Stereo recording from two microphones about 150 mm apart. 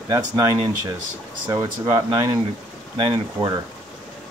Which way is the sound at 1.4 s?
25° right (ahead or behind).